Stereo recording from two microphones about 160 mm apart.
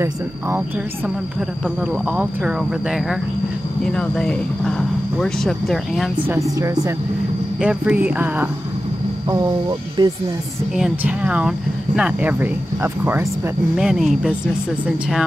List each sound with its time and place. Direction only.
2.0 s speech: 5° right (ahead or behind)
6.6 s speech: 20° right (ahead or behind)
7.6 s speech: 10° right (ahead or behind)
9.3 s speech: 20° right (ahead or behind)
10.8 s speech: 5° right (ahead or behind)
13.7 s speech: 5° right (ahead or behind)